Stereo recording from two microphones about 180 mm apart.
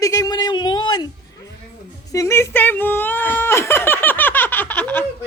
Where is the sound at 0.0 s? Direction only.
20° left (ahead or behind).